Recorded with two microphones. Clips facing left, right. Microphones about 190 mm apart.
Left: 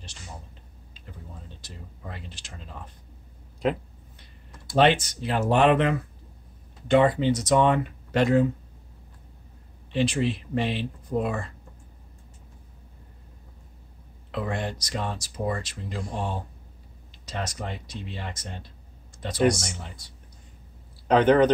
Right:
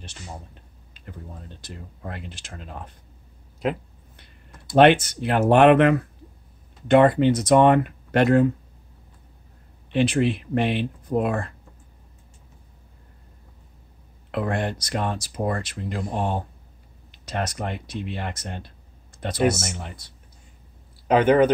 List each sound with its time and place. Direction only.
1.6 s speech: 55° right (ahead or behind)
4.7 s speech: 55° right (ahead or behind)
9.9 s speech: 55° right (ahead or behind)
14.3 s speech: 55° right (ahead or behind)
19.1 s a sound: 55° right (ahead or behind)
19.7 s speech: 60° right (ahead or behind)
21.1 s speech: 10° right (ahead or behind)